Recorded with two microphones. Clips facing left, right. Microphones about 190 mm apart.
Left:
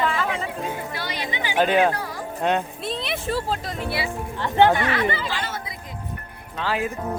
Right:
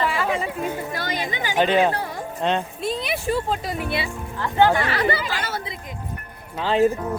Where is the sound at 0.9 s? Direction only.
45° right (ahead or behind).